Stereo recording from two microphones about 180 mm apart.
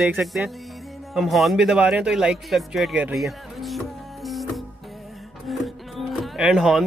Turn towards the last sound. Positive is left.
turn(degrees=0)  # may be behind; listen again after turning